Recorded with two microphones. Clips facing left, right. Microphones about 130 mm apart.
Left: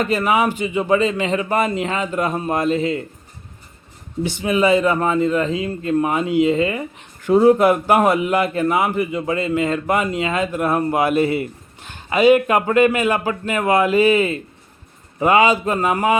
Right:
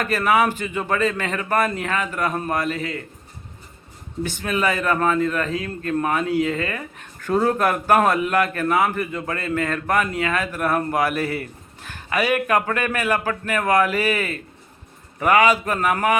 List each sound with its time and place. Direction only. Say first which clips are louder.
0.0 s a man's voice: left 2 dB; 15° left (ahead or behind)
4.2 s a man's voice: left 5 dB; 15° left (ahead or behind)